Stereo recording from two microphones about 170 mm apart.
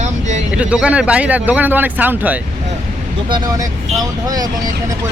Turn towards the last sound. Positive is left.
turn(degrees=-25)  # may be behind; listen again after turning